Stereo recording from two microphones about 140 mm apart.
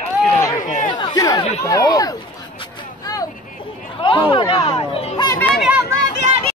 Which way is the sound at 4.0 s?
35° left (ahead or behind).